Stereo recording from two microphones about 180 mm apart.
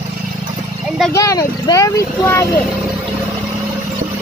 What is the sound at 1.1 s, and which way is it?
Vehicle, 20° left (ahead or behind).